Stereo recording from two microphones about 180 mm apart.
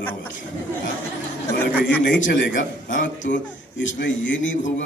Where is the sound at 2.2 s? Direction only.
50° left (ahead or behind).